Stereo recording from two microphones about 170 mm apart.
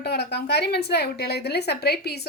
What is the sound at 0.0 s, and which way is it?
A woman's voice, 75° left (ahead or behind).